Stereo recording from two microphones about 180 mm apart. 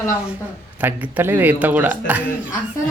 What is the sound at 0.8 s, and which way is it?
A woman's voice, 10° right (ahead or behind).